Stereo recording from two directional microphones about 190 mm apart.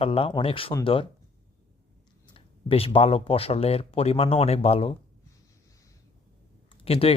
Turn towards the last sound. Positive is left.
turn(degrees=30)  # may be behind; listen again after turning